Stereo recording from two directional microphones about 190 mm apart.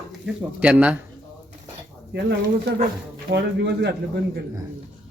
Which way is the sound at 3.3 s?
65° right (ahead or behind).